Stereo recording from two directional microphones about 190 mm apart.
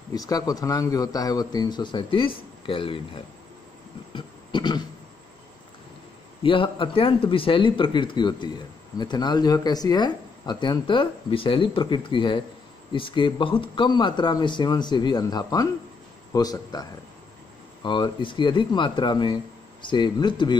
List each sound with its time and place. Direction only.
0.1 s speech: 20° left (ahead or behind)
4.1 s a sound: 25° left (ahead or behind)
6.4 s speech: 25° left (ahead or behind)
17.8 s speech: 25° left (ahead or behind)